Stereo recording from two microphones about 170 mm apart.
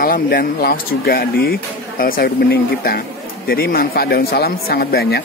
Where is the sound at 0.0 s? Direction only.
60° left (ahead or behind).